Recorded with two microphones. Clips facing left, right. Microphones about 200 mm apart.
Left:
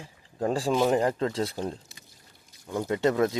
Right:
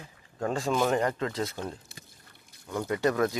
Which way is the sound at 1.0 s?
30° left (ahead or behind).